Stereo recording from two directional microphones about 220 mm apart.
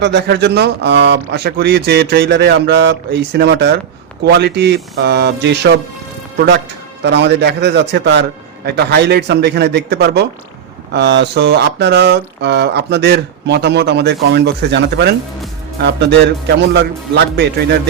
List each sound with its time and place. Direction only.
0.0 s speech: 50° right (ahead or behind)
7.0 s speech: 50° right (ahead or behind)